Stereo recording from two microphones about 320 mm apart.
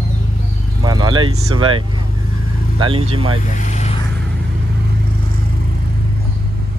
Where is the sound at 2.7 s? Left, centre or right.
Centre.